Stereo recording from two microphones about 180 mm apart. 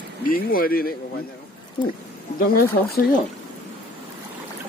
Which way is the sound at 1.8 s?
30° left (ahead or behind).